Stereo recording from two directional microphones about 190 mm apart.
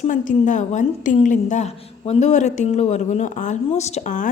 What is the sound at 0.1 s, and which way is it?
A woman's voice, 40° left (ahead or behind).